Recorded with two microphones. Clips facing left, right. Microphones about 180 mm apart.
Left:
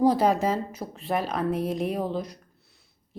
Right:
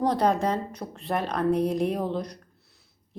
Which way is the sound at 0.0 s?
5° left (ahead or behind).